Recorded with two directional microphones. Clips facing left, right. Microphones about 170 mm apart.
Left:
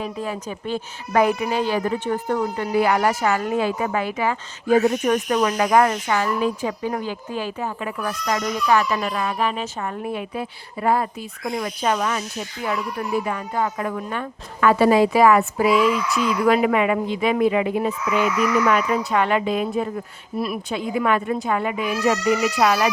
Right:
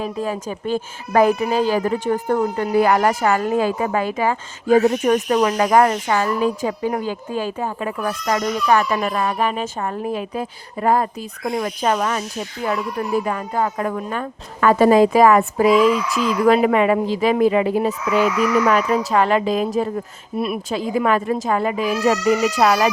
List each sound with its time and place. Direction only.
0.0 s a woman's voice: 40° right (ahead or behind)
13.2 s a woman's voice: 40° right (ahead or behind)
20.3 s speech: 25° right (ahead or behind)
20.7 s a woman's voice: 40° right (ahead or behind)